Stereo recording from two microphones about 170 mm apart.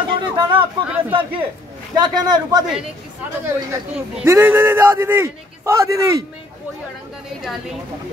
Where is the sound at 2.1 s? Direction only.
25° right (ahead or behind).